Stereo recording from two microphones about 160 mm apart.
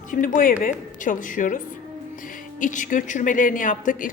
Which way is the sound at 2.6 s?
55° left (ahead or behind).